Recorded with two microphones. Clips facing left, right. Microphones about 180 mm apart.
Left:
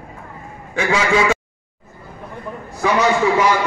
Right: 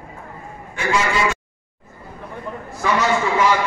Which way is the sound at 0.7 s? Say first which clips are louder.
Left 3 dB; 90° left.